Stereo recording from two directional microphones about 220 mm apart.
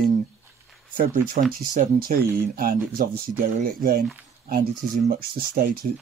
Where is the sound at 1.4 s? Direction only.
40° right (ahead or behind).